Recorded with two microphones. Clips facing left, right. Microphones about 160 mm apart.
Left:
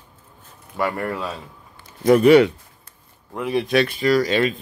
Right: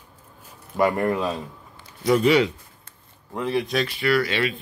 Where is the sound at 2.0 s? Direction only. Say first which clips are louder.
Left 6 dB; 55° left (ahead or behind).